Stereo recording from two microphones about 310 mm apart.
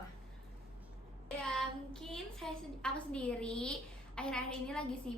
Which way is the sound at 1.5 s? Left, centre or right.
Centre.